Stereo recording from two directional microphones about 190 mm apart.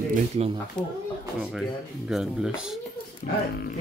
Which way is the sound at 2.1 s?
Centre (ahead or behind).